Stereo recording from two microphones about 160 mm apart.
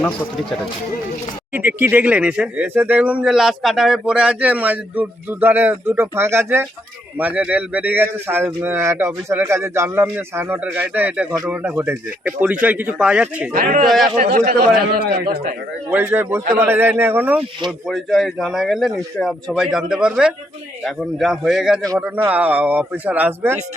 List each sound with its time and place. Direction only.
1.5 s speech: 10° right (ahead or behind)
13.5 s speech: 60° right (ahead or behind)
13.8 s a man's voice: centre (ahead or behind)
14.2 s speech: 60° right (ahead or behind)
14.8 s a man's voice: 70° right (ahead or behind)
15.9 s speech: 15° right (ahead or behind)
17.7 s a man's voice: centre (ahead or behind)